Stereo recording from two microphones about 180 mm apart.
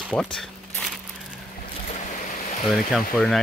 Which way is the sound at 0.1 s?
5° left (ahead or behind).